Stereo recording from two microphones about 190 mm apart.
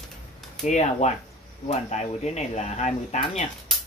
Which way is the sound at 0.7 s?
35° left (ahead or behind).